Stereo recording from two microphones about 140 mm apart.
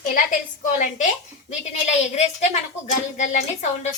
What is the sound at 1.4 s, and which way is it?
A woman's voice, 55° left (ahead or behind).